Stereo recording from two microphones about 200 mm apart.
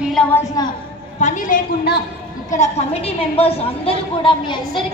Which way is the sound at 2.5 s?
30° left (ahead or behind).